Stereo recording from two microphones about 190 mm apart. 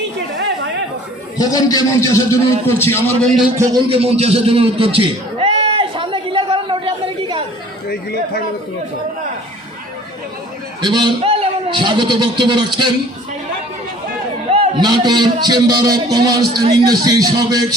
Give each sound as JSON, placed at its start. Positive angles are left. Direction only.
{"t": 1.4, "sound": "a man's voice", "side_deg": 20}
{"t": 3.6, "sound": "a sound", "side_deg": -25}
{"t": 7.9, "sound": "chatter", "side_deg": 55}
{"t": 10.8, "sound": "a man's voice", "side_deg": -25}
{"t": 14.5, "sound": "a man's voice", "side_deg": -25}